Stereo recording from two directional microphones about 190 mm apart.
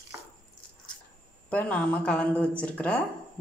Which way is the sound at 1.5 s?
5° left (ahead or behind).